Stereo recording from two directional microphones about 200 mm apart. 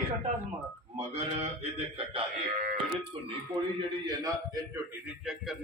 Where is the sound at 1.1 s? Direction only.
30° right (ahead or behind).